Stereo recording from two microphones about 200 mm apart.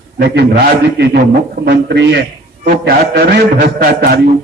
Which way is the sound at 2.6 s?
50° right (ahead or behind).